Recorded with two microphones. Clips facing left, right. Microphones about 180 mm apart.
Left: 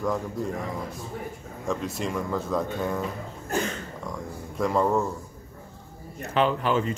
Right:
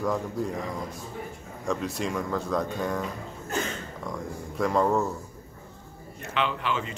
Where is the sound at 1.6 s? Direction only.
Centre (ahead or behind).